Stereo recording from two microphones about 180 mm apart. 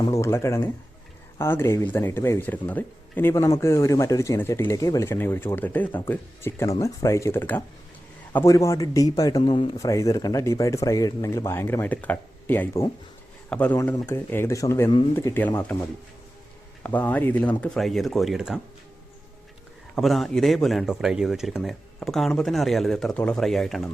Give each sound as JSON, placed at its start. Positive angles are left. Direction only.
{"t": 0.0, "sound": "speech", "side_deg": 15}
{"t": 9.7, "sound": "speech", "side_deg": 20}
{"t": 16.8, "sound": "a man's voice", "side_deg": 10}
{"t": 20.0, "sound": "a man's voice", "side_deg": 0}